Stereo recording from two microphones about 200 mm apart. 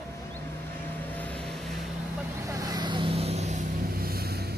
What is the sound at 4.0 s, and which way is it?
Vehicle, 50° right (ahead or behind).